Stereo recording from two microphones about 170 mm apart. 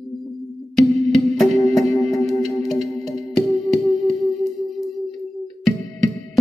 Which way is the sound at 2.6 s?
Centre (ahead or behind).